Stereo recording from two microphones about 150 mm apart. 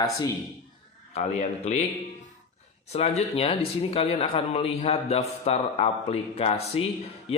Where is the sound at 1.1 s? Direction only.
50° left (ahead or behind).